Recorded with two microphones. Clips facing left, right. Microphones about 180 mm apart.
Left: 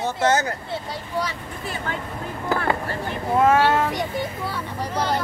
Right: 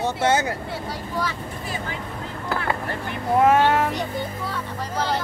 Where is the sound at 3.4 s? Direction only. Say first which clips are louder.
Even; 15° right (ahead or behind).